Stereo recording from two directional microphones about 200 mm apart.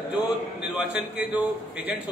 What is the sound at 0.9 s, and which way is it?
Speech, 5° right (ahead or behind).